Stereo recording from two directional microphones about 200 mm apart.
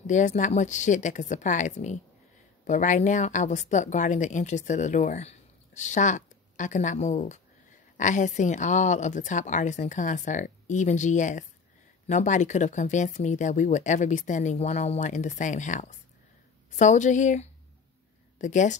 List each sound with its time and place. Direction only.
0.0 s a woman's voice: 35° left (ahead or behind)